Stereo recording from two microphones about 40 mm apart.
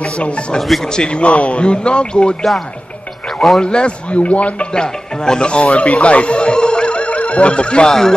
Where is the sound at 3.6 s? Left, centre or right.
Left.